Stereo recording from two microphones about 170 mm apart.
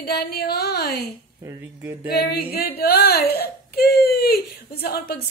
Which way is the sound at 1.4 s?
10° right (ahead or behind).